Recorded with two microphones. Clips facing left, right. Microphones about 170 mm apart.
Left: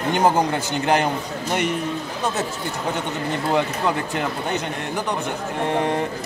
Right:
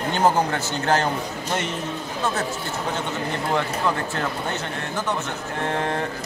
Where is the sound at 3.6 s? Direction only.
15° left (ahead or behind).